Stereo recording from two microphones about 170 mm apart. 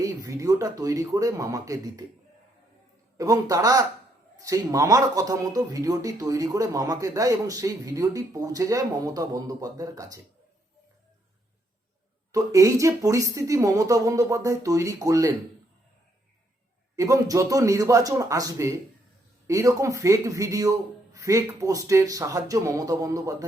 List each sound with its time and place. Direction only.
0.0 s speech: 20° right (ahead or behind)
3.2 s speech: 20° right (ahead or behind)
12.3 s speech: 20° right (ahead or behind)
16.9 s speech: 20° right (ahead or behind)